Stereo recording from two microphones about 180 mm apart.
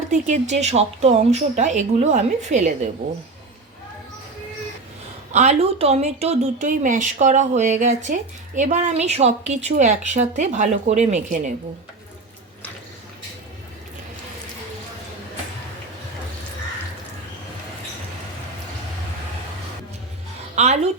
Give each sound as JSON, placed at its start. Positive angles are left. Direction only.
{"t": 0.1, "sound": "speech", "side_deg": -40}
{"t": 5.3, "sound": "speech", "side_deg": -35}
{"t": 20.6, "sound": "speech", "side_deg": -40}